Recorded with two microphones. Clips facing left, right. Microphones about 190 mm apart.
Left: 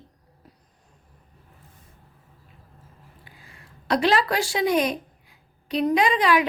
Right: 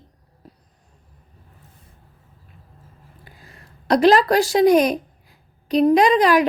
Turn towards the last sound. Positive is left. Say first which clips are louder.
# right 5 dB
turn(degrees=-40)  # may be behind; listen again after turning